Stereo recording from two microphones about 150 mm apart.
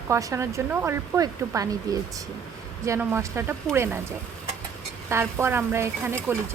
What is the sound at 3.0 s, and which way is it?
Speech, 15° right (ahead or behind).